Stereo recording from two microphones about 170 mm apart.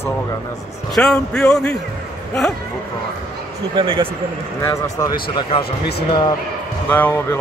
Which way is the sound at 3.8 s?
30° right (ahead or behind).